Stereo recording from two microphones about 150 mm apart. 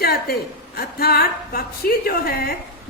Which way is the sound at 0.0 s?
90° left.